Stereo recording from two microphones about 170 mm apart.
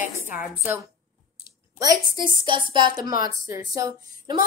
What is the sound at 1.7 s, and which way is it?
A woman's voice, 20° right (ahead or behind).